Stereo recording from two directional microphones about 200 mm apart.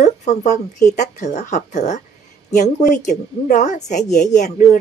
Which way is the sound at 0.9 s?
35° left (ahead or behind).